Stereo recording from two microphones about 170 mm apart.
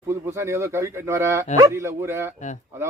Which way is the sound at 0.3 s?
15° right (ahead or behind).